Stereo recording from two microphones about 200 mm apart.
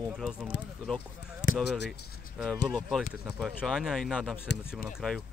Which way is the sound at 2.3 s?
Centre (ahead or behind).